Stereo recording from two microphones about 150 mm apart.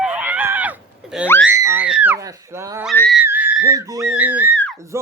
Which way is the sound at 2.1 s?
20° right (ahead or behind).